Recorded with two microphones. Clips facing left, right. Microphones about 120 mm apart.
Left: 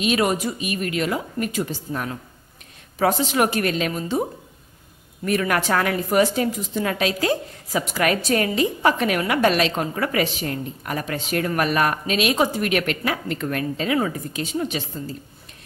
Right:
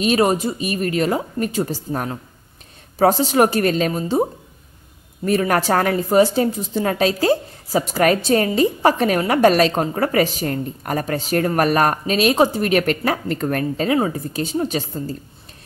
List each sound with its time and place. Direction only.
0.0 s a woman's voice: 35° right (ahead or behind)